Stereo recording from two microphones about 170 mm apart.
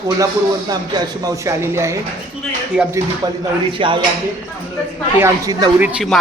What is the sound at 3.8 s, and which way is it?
Speech, 30° right (ahead or behind).